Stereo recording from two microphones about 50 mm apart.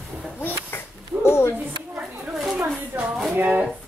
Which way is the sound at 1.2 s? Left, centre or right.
Left.